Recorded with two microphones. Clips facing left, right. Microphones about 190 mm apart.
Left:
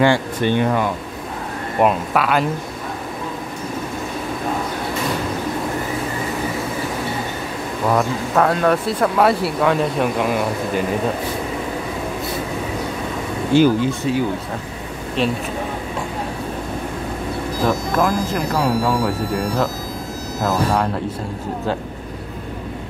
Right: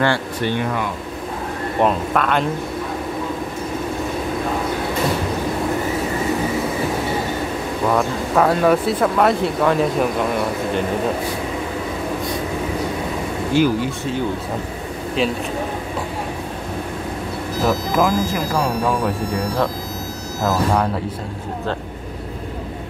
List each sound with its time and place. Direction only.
0.0 s speech: 15° left (ahead or behind)
1.8 s speech: 5° left (ahead or behind)
7.9 s speech: centre (ahead or behind)
13.5 s speech: 25° left (ahead or behind)
17.6 s speech: 5° right (ahead or behind)